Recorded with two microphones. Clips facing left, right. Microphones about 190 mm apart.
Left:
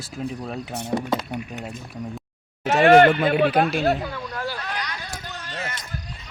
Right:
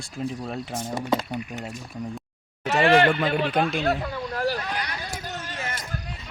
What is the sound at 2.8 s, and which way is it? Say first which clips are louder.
Speech: left 6 dB; 45° left (ahead or behind).